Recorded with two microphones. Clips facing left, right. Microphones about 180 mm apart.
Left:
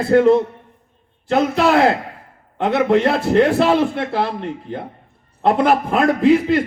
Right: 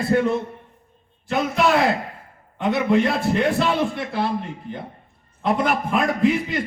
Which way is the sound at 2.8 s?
85° left.